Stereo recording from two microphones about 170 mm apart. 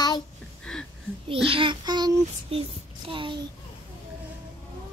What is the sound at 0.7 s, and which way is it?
Speech, 5° left (ahead or behind).